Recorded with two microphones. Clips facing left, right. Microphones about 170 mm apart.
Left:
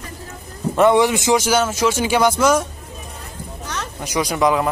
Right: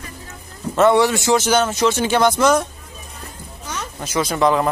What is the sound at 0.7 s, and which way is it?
A man's voice, 15° left (ahead or behind).